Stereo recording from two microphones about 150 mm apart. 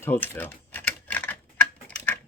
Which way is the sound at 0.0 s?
15° left (ahead or behind).